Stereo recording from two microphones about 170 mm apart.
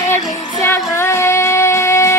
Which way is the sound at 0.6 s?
15° left (ahead or behind).